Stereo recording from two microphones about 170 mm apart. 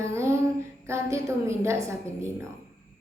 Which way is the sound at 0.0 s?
15° right (ahead or behind).